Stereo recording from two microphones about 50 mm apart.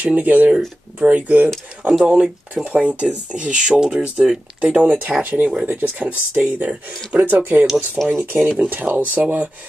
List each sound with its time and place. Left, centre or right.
0.0 s speech: right
1.5 s speech: centre; by 5.7 s right
5.7 s speech: right
6.0 s speech: right